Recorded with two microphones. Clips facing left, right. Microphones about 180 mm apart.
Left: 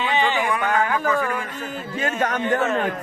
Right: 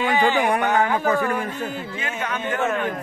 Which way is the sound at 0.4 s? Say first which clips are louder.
Right 3 dB; 65° right (ahead or behind).